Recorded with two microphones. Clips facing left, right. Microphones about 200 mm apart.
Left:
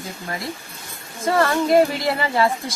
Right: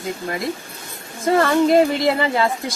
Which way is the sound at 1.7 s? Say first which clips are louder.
Right 2 dB; 20° right (ahead or behind).